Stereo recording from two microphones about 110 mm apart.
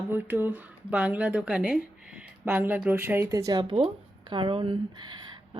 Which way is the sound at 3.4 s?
40° right (ahead or behind).